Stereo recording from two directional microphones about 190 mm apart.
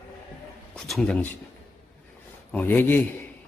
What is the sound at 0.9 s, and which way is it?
Speech, 5° left (ahead or behind).